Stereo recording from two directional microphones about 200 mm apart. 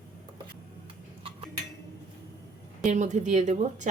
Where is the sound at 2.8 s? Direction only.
35° right (ahead or behind).